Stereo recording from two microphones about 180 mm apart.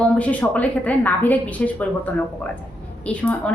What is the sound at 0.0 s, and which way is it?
A woman's voice, 5° left (ahead or behind).